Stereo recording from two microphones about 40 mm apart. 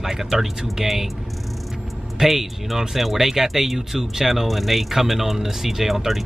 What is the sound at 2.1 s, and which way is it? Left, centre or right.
Speech, centre.